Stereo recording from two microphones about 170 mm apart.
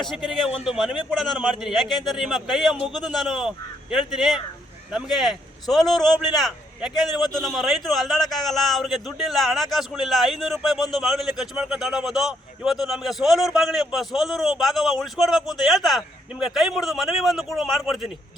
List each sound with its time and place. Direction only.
0.0 s a man's voice: centre (ahead or behind)
5.8 s a man's voice: 25° left (ahead or behind)
6.1 s a man's voice: centre (ahead or behind)